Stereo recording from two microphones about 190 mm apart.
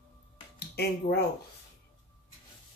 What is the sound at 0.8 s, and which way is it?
Speech, 55° left (ahead or behind).